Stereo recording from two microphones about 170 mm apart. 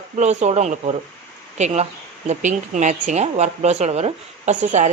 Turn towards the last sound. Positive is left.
turn(degrees=-45)  # may be behind; listen again after turning